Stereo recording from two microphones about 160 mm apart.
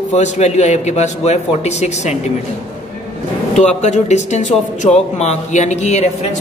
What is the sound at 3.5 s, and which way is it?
A man's voice, 45° left (ahead or behind).